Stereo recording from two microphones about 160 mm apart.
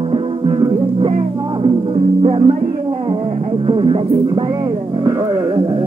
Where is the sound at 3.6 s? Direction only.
35° right (ahead or behind).